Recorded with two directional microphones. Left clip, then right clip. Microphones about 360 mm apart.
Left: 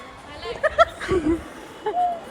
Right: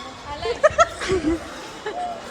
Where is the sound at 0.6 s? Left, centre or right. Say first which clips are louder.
Right 1 dB; centre.